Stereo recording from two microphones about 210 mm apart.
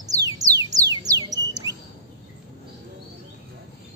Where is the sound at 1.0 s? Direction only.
15° right (ahead or behind).